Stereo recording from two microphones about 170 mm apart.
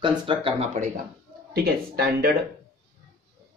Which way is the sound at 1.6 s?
65° right (ahead or behind).